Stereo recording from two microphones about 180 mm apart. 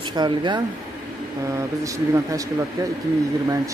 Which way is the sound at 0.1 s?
25° right (ahead or behind).